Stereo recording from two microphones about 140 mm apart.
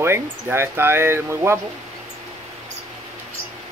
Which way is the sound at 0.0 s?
15° right (ahead or behind).